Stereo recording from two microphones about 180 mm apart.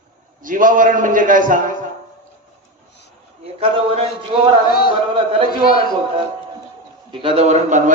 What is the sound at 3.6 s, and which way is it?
Speech, 30° right (ahead or behind).